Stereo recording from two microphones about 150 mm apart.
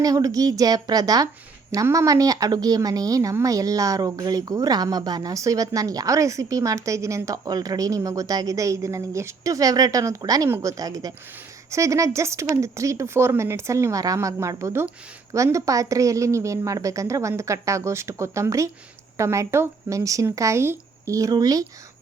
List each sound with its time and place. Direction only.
0.0 s speech: 25° right (ahead or behind)